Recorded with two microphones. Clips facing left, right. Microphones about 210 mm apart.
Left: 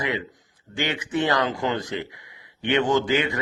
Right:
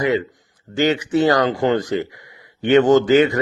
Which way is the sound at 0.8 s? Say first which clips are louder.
Right 8 dB; 40° right (ahead or behind).